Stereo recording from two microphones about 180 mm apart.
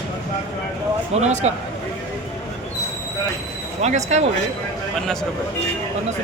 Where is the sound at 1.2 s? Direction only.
40° right (ahead or behind).